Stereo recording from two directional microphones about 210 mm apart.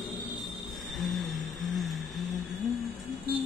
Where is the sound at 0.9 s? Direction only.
Centre (ahead or behind).